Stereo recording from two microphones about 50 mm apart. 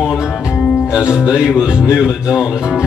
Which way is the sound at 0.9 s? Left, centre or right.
Centre.